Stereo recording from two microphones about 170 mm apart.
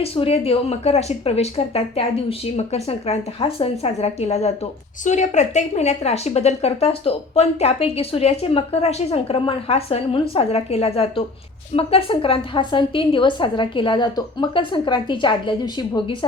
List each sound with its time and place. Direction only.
0.0 s a woman's voice: 35° left (ahead or behind)